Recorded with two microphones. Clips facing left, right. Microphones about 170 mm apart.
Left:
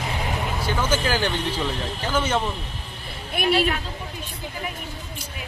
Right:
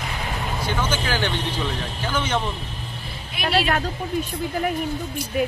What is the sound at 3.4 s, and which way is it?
Speech, 55° left (ahead or behind).